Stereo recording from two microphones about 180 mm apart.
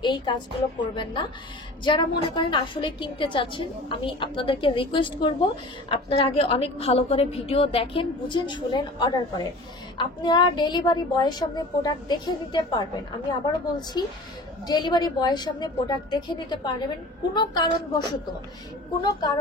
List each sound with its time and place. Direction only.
0.0 s a woman's voice: 25° left (ahead or behind)